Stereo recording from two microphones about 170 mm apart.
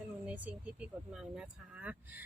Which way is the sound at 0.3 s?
10° right (ahead or behind).